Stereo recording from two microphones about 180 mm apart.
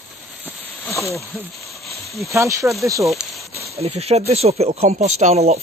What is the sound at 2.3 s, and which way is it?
Speech, 15° right (ahead or behind).